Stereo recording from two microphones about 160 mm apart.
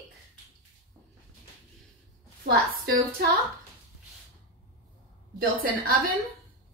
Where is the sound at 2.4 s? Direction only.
80° right.